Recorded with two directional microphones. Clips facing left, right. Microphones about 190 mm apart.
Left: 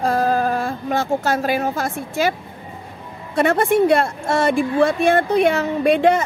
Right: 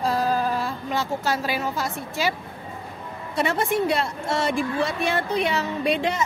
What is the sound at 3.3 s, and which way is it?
A woman's voice, 55° left (ahead or behind).